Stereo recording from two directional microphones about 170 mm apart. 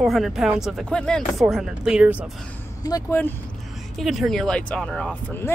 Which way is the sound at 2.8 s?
20° left (ahead or behind).